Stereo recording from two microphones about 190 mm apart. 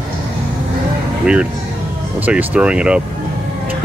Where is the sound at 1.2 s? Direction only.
5° right (ahead or behind).